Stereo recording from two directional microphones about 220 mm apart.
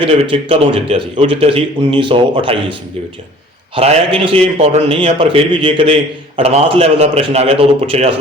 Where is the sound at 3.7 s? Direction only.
30° right (ahead or behind).